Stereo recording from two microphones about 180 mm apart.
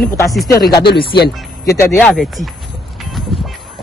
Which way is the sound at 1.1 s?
70° left (ahead or behind).